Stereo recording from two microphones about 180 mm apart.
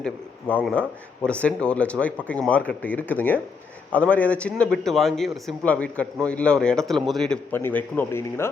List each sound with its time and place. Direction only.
0.0 s a man's voice: 5° left (ahead or behind)